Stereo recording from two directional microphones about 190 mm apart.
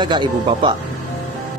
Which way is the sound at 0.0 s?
25° right (ahead or behind).